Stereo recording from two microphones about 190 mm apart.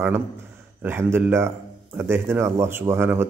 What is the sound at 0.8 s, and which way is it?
Speech, 10° right (ahead or behind).